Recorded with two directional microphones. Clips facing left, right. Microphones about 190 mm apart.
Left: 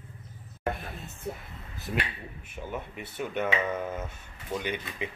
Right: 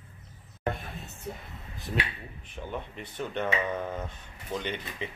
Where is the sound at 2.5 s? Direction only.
5° left (ahead or behind).